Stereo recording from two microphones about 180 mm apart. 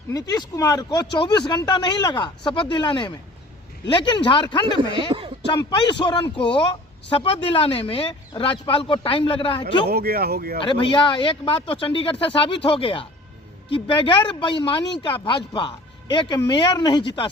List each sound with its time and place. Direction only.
0.1 s speech: 20° left (ahead or behind)
4.6 s speech: 25° right (ahead or behind)
5.5 s speech: 25° left (ahead or behind)
9.9 s speech: 60° right (ahead or behind)
10.6 s speech: 25° left (ahead or behind)